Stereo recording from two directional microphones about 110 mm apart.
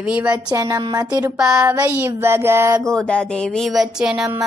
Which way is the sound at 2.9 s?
10° left (ahead or behind).